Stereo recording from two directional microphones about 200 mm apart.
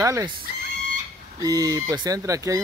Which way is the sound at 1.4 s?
20° right (ahead or behind).